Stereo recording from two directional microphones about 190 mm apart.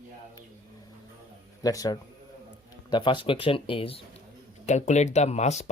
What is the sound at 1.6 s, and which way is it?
Speech, 20° left (ahead or behind).